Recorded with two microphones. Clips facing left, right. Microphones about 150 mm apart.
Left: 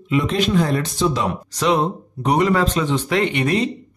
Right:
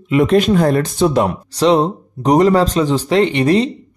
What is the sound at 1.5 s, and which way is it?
Speech, 30° right (ahead or behind).